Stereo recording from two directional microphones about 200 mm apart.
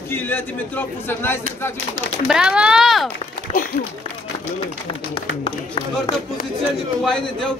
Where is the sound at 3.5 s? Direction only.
35° left (ahead or behind).